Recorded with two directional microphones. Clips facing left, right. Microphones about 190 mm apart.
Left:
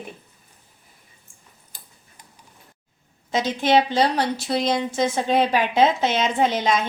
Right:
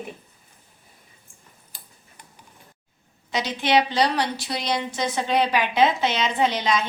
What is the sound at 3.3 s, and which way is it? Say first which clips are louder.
Speech: left 4 dB; 45° left (ahead or behind).